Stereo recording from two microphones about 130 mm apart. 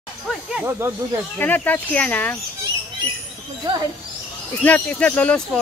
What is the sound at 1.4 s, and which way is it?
Speech, 15° left (ahead or behind).